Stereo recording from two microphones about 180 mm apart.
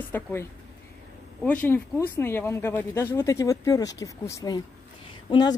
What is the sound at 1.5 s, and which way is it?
Speech, 10° left (ahead or behind).